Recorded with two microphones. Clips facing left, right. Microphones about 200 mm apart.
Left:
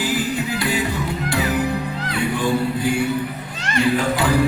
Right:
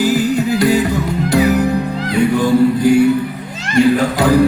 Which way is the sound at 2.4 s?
40° right (ahead or behind).